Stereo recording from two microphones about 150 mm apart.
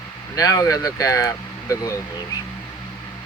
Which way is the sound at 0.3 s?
25° left (ahead or behind).